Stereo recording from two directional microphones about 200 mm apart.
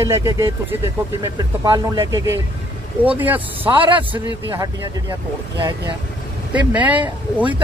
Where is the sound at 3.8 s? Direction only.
25° right (ahead or behind).